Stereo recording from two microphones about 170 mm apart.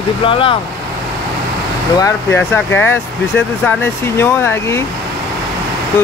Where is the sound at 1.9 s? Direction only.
15° left (ahead or behind).